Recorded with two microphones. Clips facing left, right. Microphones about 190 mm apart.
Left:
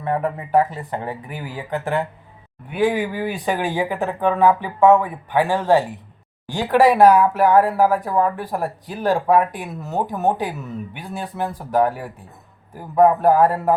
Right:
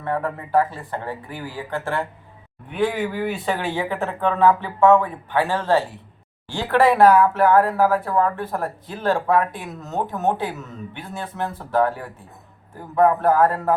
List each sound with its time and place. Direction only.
0.0 s speech: 15° left (ahead or behind)